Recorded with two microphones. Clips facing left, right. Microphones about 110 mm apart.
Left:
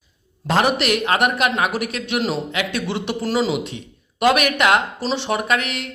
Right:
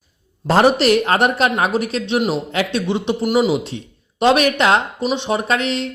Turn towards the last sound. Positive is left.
turn(degrees=-30)  # may be behind; listen again after turning